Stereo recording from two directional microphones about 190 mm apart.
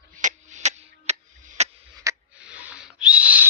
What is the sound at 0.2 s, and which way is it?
Tick-tock, 40° right (ahead or behind).